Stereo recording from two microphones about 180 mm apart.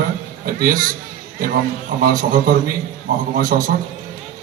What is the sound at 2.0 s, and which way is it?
A man's voice, 50° right (ahead or behind).